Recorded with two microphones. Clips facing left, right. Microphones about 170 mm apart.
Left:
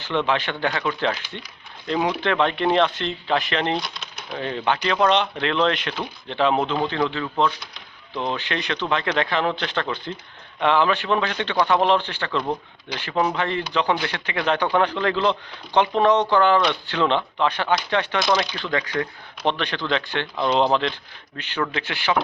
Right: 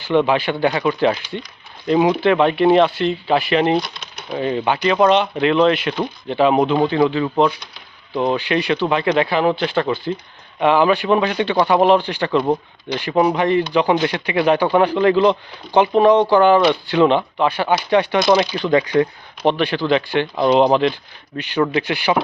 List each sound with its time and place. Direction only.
0.0 s speech: 10° right (ahead or behind)
18.7 s speech: 25° right (ahead or behind)
19.5 s speech: 10° right (ahead or behind)